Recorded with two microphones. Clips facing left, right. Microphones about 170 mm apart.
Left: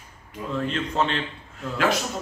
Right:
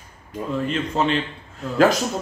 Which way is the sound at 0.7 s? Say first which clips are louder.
Right 3 dB; 5° right (ahead or behind).